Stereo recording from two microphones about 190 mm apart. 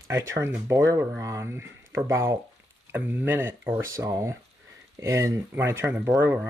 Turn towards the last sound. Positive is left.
turn(degrees=-10)  # may be behind; listen again after turning